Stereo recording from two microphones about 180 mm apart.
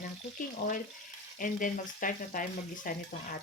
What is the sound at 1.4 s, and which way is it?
Frying, 50° left (ahead or behind).